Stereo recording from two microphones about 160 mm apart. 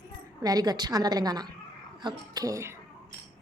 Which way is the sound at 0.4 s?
25° right (ahead or behind).